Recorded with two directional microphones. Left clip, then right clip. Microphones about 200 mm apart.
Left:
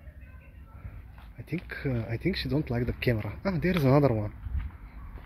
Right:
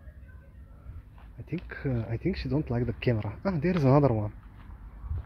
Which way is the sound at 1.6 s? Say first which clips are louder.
Even; 15° right (ahead or behind).